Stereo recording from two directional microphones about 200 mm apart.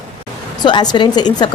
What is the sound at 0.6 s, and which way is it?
Speech, 20° left (ahead or behind).